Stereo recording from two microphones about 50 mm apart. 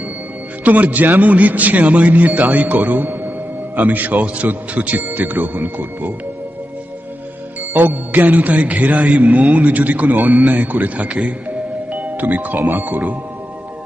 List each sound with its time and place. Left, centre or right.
0.7 s a man's voice: right
7.7 s a man's voice: right
11.9 s music: right
12.6 s speech: right